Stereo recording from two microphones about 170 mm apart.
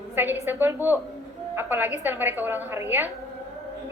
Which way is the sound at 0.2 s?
15° right (ahead or behind).